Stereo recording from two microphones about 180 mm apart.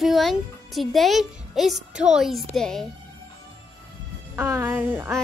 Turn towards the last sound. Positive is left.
turn(degrees=-10)  # may be behind; listen again after turning